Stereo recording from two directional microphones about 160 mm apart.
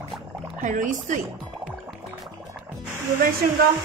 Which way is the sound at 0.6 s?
50° right (ahead or behind).